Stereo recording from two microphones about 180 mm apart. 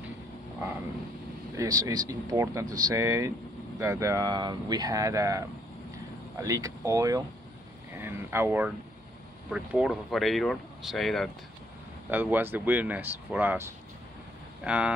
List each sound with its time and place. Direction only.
1.6 s speech: 20° right (ahead or behind)
6.4 s speech: 20° right (ahead or behind); by 11.2 s centre (ahead or behind)
12.1 s speech: 10° right (ahead or behind)